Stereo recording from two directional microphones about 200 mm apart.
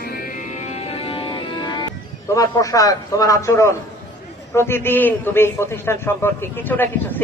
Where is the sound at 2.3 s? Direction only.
15° left (ahead or behind).